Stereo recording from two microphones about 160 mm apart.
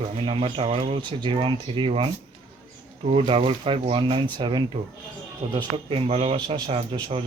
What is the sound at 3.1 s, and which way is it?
Speech, 35° right (ahead or behind).